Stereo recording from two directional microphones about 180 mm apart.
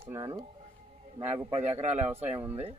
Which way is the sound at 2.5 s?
35° right (ahead or behind).